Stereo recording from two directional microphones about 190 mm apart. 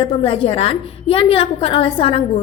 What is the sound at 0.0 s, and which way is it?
A woman's voice, 30° left (ahead or behind).